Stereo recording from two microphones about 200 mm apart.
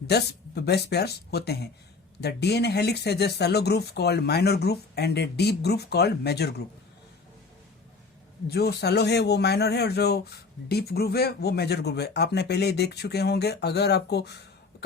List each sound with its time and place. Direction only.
0.1 s speech: 55° left (ahead or behind)
8.4 s speech: 55° left (ahead or behind)